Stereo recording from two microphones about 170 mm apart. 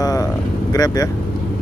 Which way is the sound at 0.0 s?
20° left (ahead or behind).